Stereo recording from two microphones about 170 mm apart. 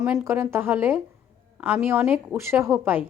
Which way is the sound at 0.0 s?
5° right (ahead or behind).